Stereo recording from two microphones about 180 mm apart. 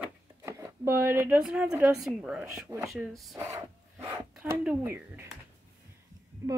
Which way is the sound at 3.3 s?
20° right (ahead or behind).